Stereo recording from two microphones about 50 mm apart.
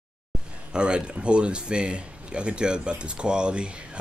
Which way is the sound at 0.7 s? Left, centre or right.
Centre.